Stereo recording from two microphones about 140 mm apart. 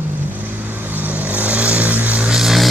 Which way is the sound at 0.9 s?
10° right (ahead or behind).